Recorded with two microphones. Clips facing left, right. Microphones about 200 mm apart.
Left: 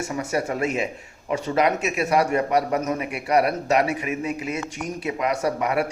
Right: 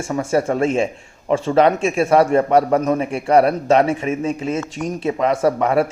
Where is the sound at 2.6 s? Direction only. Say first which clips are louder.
Right 7 dB; 50° right (ahead or behind).